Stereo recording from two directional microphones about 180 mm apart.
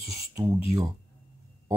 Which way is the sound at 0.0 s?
20° right (ahead or behind).